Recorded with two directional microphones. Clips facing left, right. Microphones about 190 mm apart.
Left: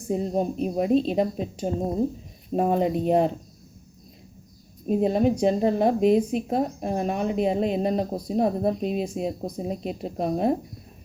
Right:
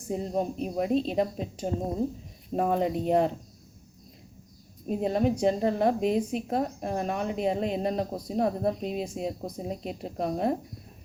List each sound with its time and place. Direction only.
0.1 s a woman's voice: 20° left (ahead or behind)
4.9 s a woman's voice: 20° left (ahead or behind)